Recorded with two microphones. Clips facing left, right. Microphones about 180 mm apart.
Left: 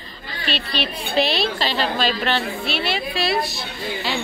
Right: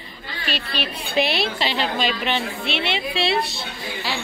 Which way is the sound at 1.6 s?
20° right (ahead or behind).